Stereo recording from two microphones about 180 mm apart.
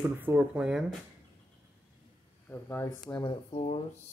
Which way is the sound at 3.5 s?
35° left (ahead or behind).